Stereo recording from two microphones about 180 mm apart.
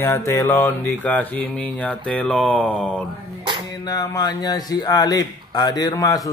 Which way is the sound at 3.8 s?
20° left (ahead or behind).